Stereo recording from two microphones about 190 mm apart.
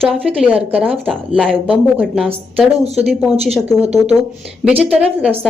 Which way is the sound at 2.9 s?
Centre (ahead or behind).